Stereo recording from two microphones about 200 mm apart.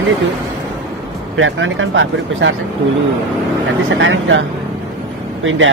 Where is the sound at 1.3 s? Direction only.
75° right (ahead or behind).